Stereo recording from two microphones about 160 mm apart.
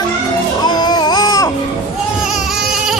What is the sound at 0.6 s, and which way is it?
Baby cry, 25° left (ahead or behind).